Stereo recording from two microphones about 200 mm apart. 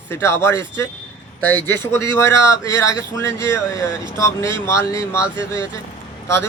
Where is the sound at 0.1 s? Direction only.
15° left (ahead or behind).